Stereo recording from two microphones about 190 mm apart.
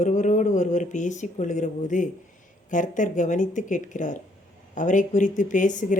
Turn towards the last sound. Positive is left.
turn(degrees=40)  # may be behind; listen again after turning